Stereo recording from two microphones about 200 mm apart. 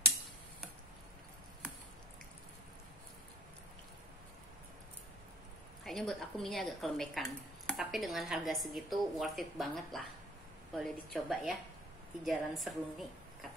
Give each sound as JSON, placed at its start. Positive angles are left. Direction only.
{"t": 5.9, "sound": "a woman's voice", "side_deg": 0}